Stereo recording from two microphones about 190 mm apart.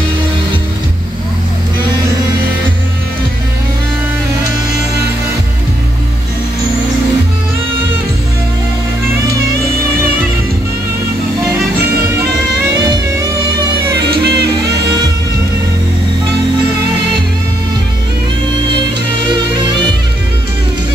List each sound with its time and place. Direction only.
14.2 s music: 60° right (ahead or behind)